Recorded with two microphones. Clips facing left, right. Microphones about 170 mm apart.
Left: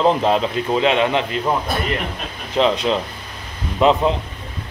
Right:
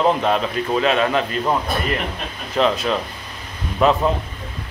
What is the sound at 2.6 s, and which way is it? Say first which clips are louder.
Speech: left 1 dB; 20° left (ahead or behind).